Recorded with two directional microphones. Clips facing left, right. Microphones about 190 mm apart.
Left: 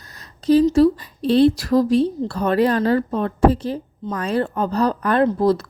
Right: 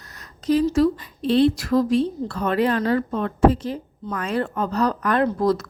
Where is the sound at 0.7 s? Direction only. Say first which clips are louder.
Left 4 dB; 35° left (ahead or behind).